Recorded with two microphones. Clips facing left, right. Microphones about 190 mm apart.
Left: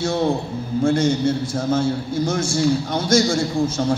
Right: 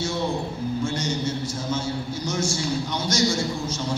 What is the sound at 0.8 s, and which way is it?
A man's voice, 55° left (ahead or behind).